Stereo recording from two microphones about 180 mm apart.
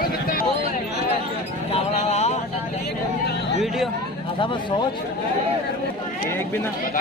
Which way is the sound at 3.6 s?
Centre (ahead or behind).